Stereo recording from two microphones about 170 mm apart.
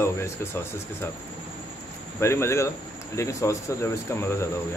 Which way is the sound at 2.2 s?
15° left (ahead or behind).